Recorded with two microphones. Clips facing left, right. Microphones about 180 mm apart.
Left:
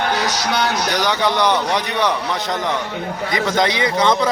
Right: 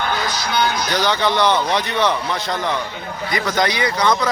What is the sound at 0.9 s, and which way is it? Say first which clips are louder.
A man's voice: right 1 dB; 15° left (ahead or behind).